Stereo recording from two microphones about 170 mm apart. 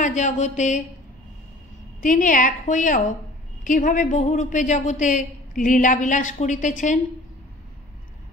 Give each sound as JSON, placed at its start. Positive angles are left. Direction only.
{"t": 0.0, "sound": "a woman's voice", "side_deg": 45}
{"t": 2.0, "sound": "a woman's voice", "side_deg": 50}